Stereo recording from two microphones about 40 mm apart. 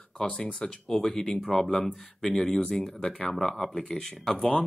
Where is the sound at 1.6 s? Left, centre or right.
Centre.